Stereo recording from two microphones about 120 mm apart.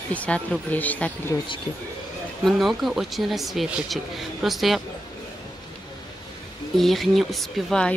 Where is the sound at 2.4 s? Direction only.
Centre (ahead or behind).